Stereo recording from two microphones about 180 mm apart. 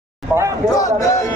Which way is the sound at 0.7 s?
20° left (ahead or behind).